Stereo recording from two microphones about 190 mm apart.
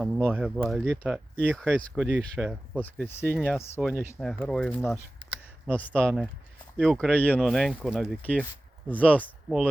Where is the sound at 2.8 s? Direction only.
10° left (ahead or behind).